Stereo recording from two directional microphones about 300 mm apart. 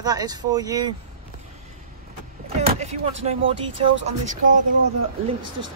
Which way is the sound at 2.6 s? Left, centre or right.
Right.